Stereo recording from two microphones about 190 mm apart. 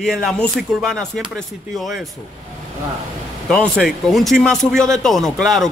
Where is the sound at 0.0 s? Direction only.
Centre (ahead or behind).